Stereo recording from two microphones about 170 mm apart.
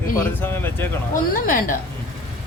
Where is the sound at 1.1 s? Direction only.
55° left (ahead or behind).